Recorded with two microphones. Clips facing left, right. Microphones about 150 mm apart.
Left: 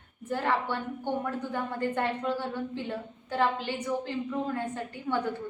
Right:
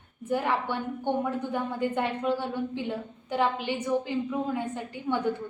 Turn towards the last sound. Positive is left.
turn(degrees=-15)  # may be behind; listen again after turning